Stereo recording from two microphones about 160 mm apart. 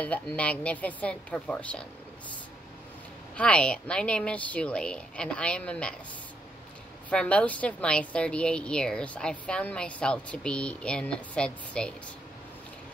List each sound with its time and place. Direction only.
0.0 s a woman's voice: 10° left (ahead or behind)
3.3 s a woman's voice: 5° left (ahead or behind)
7.1 s a woman's voice: 5° left (ahead or behind)